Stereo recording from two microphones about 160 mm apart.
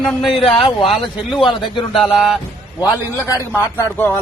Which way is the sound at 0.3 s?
35° left (ahead or behind).